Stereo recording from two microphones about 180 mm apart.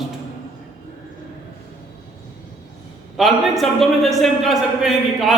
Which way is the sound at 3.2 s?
Centre (ahead or behind).